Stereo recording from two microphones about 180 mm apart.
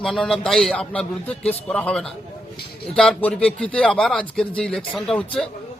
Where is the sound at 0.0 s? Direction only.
Centre (ahead or behind).